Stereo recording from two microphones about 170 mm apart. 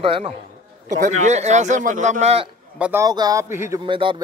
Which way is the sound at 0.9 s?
45° right (ahead or behind).